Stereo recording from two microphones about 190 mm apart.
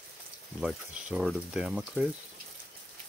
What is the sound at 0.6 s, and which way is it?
Speech, centre (ahead or behind).